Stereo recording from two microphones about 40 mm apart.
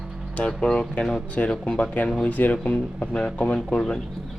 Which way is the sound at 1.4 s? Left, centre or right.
Left.